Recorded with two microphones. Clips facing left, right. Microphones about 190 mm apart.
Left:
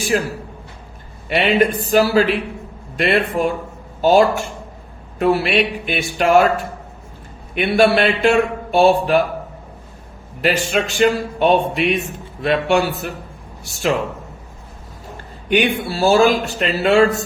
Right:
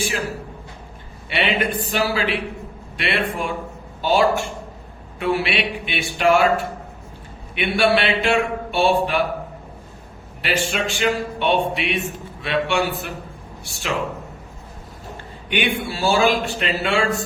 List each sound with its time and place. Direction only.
1.3 s speech: 40° left (ahead or behind)
7.5 s speech: 40° left (ahead or behind)
10.4 s speech: 40° left (ahead or behind)
15.4 s speech: 40° left (ahead or behind)